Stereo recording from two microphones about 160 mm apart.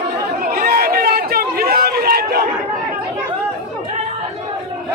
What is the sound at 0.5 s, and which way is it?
Chatter, 65° right (ahead or behind).